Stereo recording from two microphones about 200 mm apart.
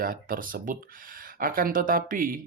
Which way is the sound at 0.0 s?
45° right (ahead or behind).